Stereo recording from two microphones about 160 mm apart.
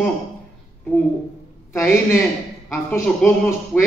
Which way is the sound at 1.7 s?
20° left (ahead or behind).